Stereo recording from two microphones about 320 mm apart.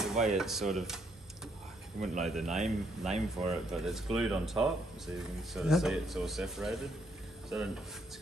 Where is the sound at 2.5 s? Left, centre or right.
Centre.